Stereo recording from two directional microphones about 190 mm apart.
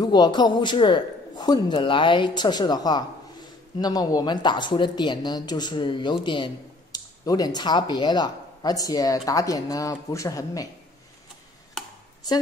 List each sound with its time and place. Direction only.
0.0 s speech: 20° left (ahead or behind)